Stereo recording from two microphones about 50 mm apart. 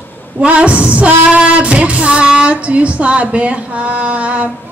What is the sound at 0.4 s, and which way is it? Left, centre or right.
Music, right.